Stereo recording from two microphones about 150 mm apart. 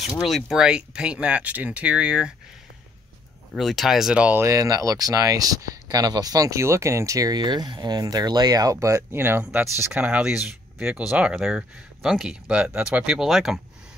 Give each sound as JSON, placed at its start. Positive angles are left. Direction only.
{"t": 0.0, "sound": "speech", "side_deg": 0}
{"t": 3.5, "sound": "speech", "side_deg": 0}
{"t": 4.5, "sound": "speech", "side_deg": -25}